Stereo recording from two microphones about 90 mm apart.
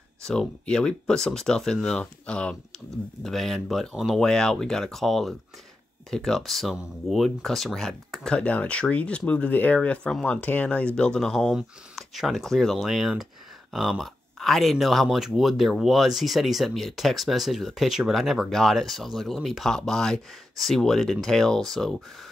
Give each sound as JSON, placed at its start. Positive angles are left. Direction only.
{"t": 0.2, "sound": "speech", "side_deg": 5}